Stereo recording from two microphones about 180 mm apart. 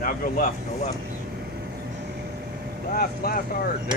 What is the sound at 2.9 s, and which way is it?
Speech, 55° left (ahead or behind).